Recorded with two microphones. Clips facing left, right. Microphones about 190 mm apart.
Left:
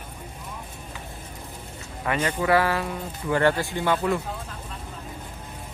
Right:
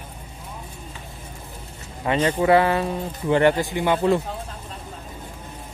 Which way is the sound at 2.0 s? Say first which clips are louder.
Right 5 dB; 30° right (ahead or behind).